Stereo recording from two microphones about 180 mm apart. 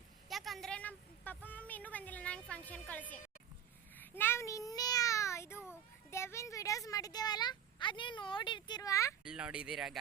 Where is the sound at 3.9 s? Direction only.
10° left (ahead or behind).